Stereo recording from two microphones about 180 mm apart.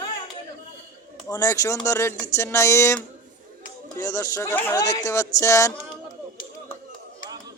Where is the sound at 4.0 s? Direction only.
15° left (ahead or behind).